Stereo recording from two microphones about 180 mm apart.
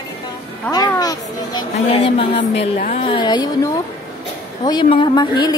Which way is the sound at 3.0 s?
25° left (ahead or behind).